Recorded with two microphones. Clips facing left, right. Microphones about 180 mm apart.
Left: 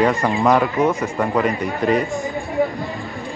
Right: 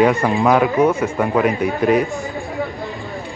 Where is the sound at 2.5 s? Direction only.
Centre (ahead or behind).